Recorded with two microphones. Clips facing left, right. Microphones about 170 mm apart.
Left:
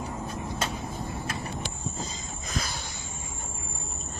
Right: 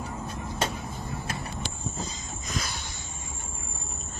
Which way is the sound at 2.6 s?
40° left (ahead or behind).